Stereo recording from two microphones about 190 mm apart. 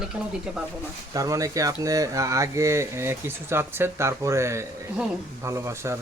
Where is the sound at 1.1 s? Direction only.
20° right (ahead or behind).